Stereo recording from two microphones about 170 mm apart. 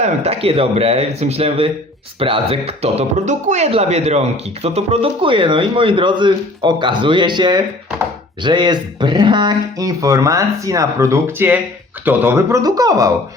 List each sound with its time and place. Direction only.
0.0 s speech: 35° right (ahead or behind); by 13.1 s 20° right (ahead or behind)